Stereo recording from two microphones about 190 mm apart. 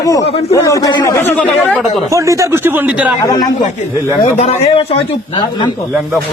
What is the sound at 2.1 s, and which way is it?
Speech, 15° right (ahead or behind).